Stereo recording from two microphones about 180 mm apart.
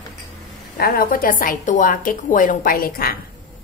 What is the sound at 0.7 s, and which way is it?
A woman's voice, 55° left (ahead or behind).